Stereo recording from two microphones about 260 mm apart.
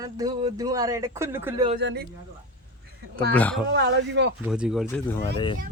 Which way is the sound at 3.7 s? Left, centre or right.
Right.